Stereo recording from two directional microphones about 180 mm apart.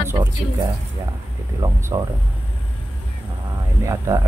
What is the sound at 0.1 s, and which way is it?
Speech, 20° right (ahead or behind).